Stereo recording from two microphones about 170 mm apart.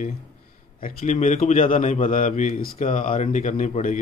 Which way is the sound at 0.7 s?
50° left (ahead or behind).